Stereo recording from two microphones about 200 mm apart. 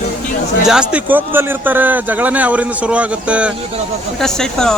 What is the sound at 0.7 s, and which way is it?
A man's voice, 5° right (ahead or behind).